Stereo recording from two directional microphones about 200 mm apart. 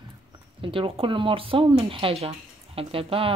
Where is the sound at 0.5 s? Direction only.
25° right (ahead or behind).